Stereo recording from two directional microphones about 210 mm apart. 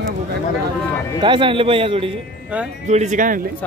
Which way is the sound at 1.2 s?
25° right (ahead or behind).